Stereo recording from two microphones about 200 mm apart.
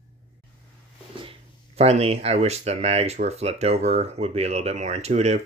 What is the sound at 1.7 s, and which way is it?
Speech, 30° right (ahead or behind).